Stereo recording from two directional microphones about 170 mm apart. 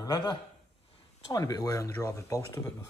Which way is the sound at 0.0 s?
30° left (ahead or behind).